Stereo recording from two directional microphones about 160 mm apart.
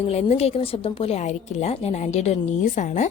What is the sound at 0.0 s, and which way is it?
A woman's voice, 40° left (ahead or behind).